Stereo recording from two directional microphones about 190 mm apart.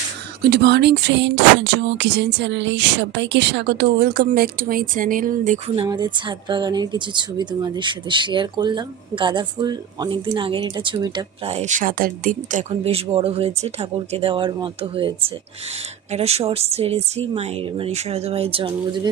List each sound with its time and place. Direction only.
0.5 s a sound: 60° right (ahead or behind); by 5.7 s 45° right (ahead or behind)
5.7 s speech: 25° right (ahead or behind)
11.4 s speech: 35° right (ahead or behind)
12.7 s speech: 30° right (ahead or behind)